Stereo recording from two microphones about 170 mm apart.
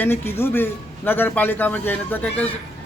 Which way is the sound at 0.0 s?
15° left (ahead or behind).